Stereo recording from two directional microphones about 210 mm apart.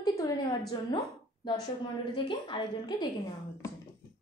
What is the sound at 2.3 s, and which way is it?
Speech, 25° left (ahead or behind).